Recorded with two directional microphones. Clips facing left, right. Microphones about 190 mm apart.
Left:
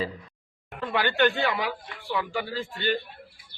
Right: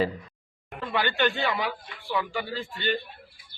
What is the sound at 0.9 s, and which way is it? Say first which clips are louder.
A man's voice: left 2 dB; 10° left (ahead or behind).